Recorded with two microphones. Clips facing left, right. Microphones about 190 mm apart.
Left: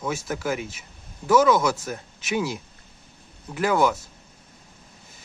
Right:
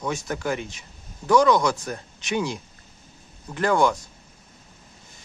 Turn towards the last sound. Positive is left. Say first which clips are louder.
# right 1 dB
turn(degrees=5)  # may be behind; listen again after turning